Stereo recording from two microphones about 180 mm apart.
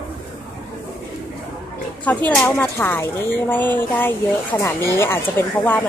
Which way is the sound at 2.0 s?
10° left (ahead or behind).